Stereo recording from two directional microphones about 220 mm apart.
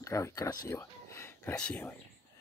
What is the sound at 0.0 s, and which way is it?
Speech, 15° left (ahead or behind).